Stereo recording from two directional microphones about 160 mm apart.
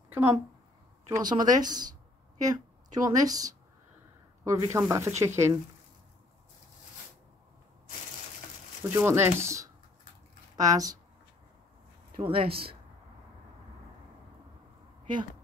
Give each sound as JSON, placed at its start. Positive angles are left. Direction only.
{"t": 0.1, "sound": "a woman's voice", "side_deg": -15}
{"t": 8.9, "sound": "speech", "side_deg": -15}
{"t": 12.2, "sound": "speech", "side_deg": -35}